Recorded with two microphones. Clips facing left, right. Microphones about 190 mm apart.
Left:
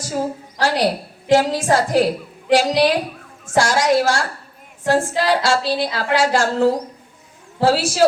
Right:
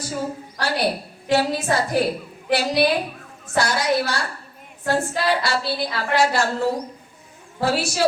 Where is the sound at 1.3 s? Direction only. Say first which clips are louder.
Left 5 dB; 90° left.